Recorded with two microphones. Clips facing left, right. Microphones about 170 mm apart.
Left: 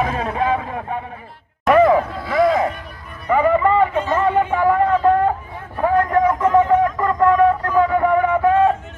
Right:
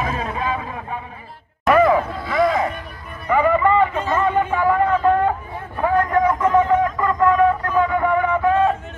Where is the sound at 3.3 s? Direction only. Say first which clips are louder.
Left 1 dB; 35° left (ahead or behind).